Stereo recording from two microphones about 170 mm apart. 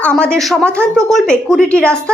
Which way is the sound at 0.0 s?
5° left (ahead or behind).